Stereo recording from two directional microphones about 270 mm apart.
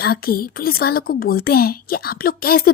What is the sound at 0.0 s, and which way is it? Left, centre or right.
A woman's voice, left.